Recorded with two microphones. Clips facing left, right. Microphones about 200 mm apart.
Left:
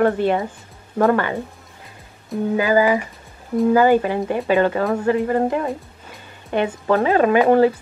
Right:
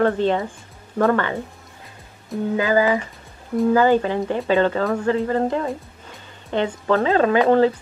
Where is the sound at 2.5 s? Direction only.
15° left (ahead or behind).